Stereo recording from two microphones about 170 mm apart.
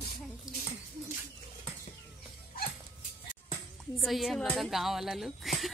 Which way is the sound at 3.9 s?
Centre (ahead or behind).